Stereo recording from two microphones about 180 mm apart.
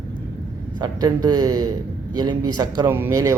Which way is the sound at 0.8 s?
20° right (ahead or behind).